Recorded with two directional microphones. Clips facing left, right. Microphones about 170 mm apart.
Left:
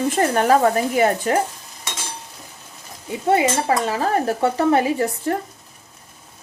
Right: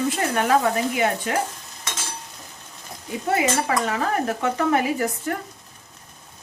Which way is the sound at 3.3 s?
30° left (ahead or behind).